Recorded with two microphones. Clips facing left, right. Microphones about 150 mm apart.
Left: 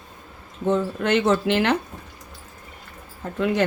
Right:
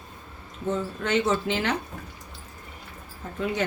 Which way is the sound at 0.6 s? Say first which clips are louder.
Left 6 dB; 65° left (ahead or behind).